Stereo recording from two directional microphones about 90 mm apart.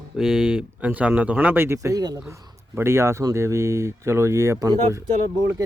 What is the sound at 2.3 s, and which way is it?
Speech, 30° right (ahead or behind).